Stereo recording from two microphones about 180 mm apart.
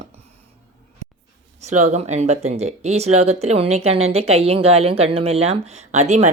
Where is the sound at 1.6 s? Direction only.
40° right (ahead or behind).